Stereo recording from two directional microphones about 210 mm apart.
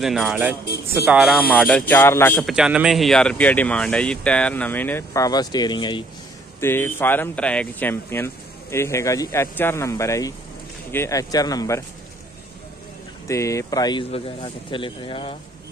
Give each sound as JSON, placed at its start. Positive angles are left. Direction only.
{"t": 0.0, "sound": "speech", "side_deg": 0}
{"t": 2.3, "sound": "speech", "side_deg": 0}
{"t": 6.6, "sound": "speech", "side_deg": 10}
{"t": 13.3, "sound": "speech", "side_deg": 15}